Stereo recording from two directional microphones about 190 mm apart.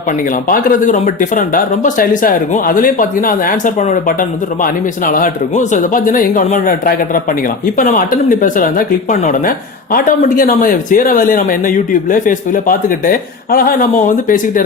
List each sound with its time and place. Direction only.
0.4 s speech: 45° left (ahead or behind)